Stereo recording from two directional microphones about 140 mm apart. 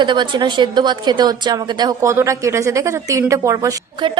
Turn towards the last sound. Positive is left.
turn(degrees=-25)  # may be behind; listen again after turning